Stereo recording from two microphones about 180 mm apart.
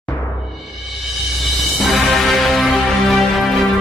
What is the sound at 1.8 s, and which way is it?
Music, centre (ahead or behind).